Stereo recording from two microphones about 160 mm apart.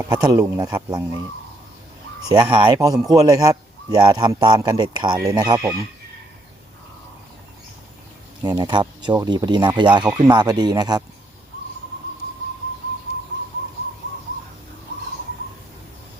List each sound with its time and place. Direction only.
0.0 s a man's voice: 25° right (ahead or behind)
2.3 s a man's voice: 30° right (ahead or behind)
8.4 s a man's voice: 25° right (ahead or behind)